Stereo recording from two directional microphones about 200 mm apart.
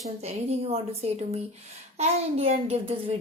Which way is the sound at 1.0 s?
35° right (ahead or behind).